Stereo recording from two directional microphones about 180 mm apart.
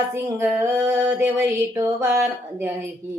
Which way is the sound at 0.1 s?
15° right (ahead or behind).